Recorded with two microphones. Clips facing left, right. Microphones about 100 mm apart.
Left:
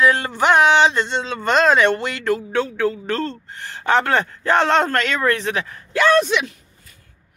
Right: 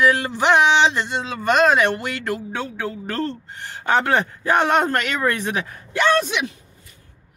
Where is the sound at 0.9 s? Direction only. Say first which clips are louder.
Left 2 dB; 10° right (ahead or behind).